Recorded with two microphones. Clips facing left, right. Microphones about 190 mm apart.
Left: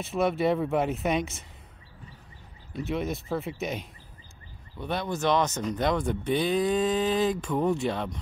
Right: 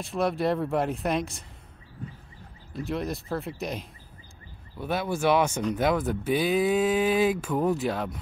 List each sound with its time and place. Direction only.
0.0 s speech: centre (ahead or behind)
2.7 s speech: centre (ahead or behind)